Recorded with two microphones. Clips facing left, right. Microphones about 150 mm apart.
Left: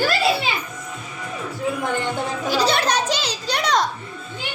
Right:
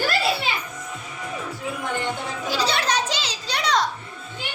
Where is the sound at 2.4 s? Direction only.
50° left (ahead or behind).